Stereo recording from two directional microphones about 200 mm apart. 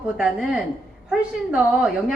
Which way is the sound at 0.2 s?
5° right (ahead or behind).